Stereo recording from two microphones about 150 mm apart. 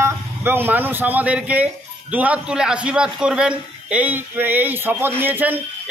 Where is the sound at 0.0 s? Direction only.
15° right (ahead or behind).